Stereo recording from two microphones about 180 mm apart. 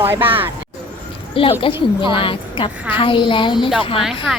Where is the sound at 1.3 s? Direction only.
30° left (ahead or behind).